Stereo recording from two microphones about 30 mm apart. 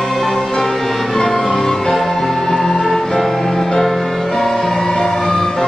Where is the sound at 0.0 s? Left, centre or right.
Centre.